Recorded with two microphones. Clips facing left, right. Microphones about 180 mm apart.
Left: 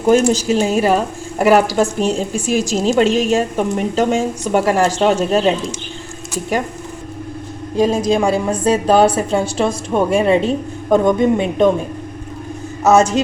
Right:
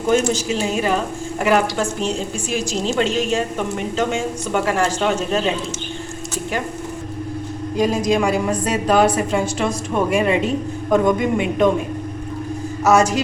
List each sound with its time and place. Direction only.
0.3 s a woman's voice: 40° left (ahead or behind)
7.8 s a woman's voice: 30° left (ahead or behind)
12.8 s a woman's voice: 25° left (ahead or behind)